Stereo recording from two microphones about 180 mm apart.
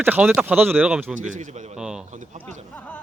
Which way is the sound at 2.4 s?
5° left (ahead or behind).